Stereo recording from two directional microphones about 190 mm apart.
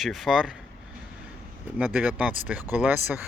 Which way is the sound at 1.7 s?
5° right (ahead or behind).